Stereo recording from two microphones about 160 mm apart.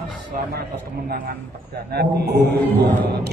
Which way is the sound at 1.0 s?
65° right (ahead or behind).